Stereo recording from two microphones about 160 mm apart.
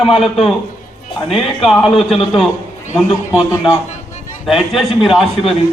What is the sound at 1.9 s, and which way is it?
Speech, 35° left (ahead or behind).